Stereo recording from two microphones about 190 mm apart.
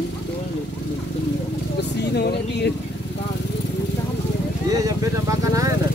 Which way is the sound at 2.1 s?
60° left (ahead or behind).